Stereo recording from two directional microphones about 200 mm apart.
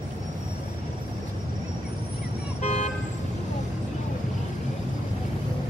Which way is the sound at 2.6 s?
35° left (ahead or behind).